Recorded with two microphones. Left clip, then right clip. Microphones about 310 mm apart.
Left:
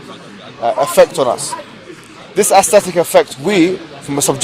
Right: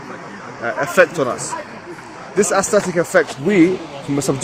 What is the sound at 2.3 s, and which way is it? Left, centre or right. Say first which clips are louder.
Speech: left 6 dB; left.